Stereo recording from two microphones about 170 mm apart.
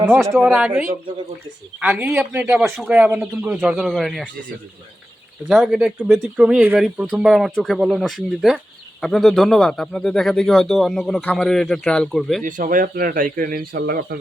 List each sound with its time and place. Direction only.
0.3 s speech: 5° right (ahead or behind)
2.9 s speech: 10° right (ahead or behind)
5.5 s speech: centre (ahead or behind)
12.4 s speech: 50° right (ahead or behind)